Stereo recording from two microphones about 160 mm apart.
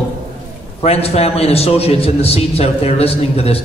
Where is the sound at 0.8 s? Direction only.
40° left (ahead or behind).